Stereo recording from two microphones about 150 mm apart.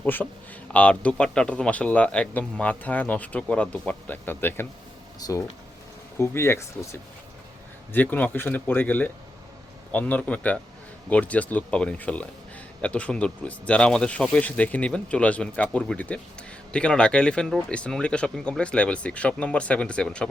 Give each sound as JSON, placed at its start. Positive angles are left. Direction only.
{"t": 0.0, "sound": "speech", "side_deg": 10}
{"t": 5.2, "sound": "speech", "side_deg": 25}